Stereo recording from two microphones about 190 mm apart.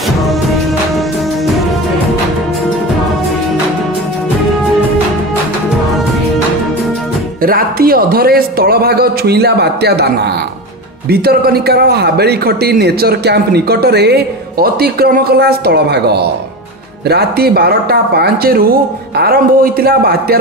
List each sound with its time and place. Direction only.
7.4 s a man's voice: 50° right (ahead or behind)